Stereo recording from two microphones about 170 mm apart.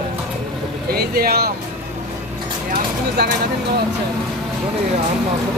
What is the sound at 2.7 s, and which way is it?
Speech, 75° right (ahead or behind).